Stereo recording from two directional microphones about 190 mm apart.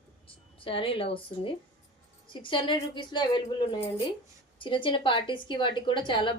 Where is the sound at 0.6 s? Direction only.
30° left (ahead or behind).